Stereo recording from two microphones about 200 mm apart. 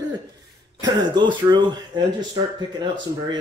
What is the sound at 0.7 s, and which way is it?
Speech, 20° right (ahead or behind).